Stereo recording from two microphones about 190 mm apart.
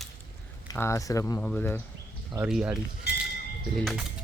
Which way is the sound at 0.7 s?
15° left (ahead or behind).